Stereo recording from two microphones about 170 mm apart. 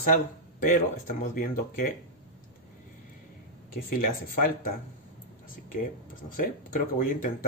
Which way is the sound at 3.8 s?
55° left (ahead or behind).